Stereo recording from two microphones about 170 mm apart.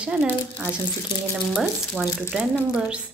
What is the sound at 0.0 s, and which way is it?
A woman's voice, 5° right (ahead or behind).